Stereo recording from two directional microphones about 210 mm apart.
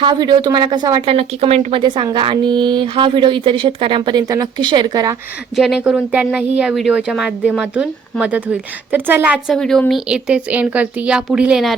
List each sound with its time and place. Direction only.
0.0 s speech: 20° right (ahead or behind)
1.1 s speech: 30° right (ahead or behind)
5.5 s speech: centre (ahead or behind)